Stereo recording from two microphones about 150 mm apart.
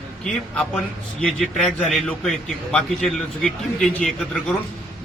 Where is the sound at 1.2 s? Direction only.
5° left (ahead or behind).